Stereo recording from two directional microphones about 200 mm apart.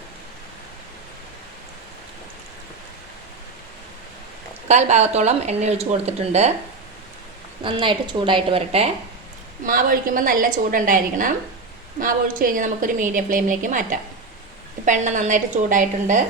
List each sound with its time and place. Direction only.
4.7 s speech: 35° right (ahead or behind)
7.6 s a woman's voice: 25° right (ahead or behind)
9.6 s a woman's voice: 45° right (ahead or behind)